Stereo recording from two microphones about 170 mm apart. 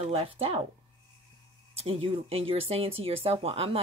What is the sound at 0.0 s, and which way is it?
Speech, 35° right (ahead or behind).